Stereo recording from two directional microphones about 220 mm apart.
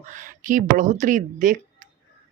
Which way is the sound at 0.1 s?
35° right (ahead or behind).